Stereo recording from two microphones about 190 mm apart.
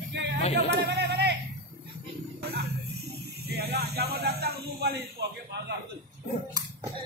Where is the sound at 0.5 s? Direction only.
60° right (ahead or behind).